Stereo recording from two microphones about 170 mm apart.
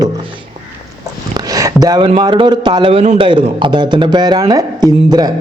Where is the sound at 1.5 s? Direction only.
20° right (ahead or behind).